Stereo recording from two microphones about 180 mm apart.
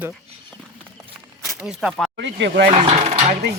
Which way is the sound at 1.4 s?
Centre (ahead or behind).